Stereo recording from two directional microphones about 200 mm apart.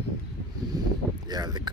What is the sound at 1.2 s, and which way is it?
Speech, 20° right (ahead or behind).